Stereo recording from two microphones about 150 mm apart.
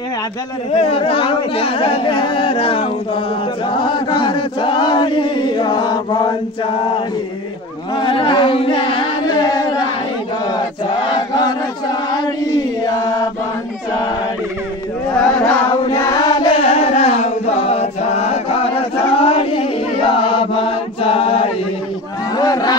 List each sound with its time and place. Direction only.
0.7 s chant: 40° left (ahead or behind)
7.9 s carnatic music: 35° left (ahead or behind)
11.1 s chant: 30° left (ahead or behind)
15.0 s chant: 5° left (ahead or behind)
15.8 s chant: 25° left (ahead or behind); by 21.5 s 40° left (ahead or behind)
22.3 s a sound: 25° left (ahead or behind)